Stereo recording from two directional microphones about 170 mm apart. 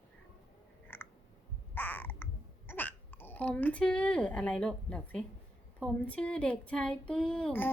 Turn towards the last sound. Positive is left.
turn(degrees=10)  # may be behind; listen again after turning